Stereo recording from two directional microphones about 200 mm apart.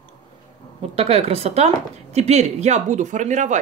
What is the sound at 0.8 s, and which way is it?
Speech, 30° right (ahead or behind).